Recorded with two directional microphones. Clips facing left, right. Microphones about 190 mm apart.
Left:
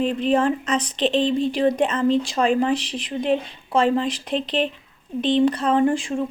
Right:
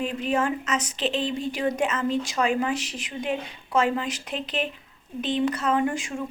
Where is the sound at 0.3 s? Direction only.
30° left (ahead or behind).